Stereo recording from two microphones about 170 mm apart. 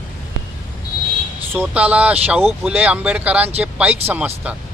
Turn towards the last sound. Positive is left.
turn(degrees=-10)  # may be behind; listen again after turning